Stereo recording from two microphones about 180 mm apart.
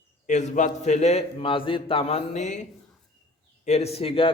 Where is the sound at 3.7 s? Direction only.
35° left (ahead or behind).